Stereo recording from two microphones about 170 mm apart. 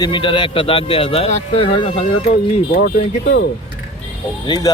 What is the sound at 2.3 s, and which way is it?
Speech, 60° left (ahead or behind).